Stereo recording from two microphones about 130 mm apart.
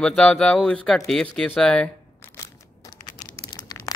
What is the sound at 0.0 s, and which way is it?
Speech, 10° left (ahead or behind).